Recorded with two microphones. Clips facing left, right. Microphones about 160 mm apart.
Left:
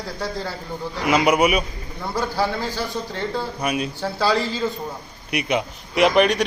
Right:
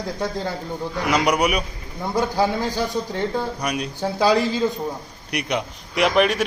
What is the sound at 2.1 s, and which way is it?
Speech, 20° right (ahead or behind).